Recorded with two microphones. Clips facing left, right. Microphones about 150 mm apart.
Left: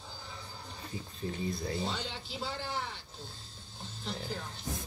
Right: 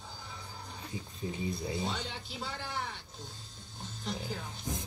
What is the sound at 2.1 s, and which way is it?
Speech, 55° right (ahead or behind).